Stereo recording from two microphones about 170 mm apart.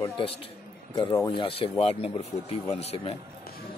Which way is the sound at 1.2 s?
30° left (ahead or behind).